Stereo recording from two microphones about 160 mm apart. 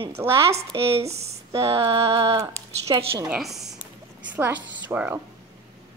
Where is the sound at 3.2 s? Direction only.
5° right (ahead or behind).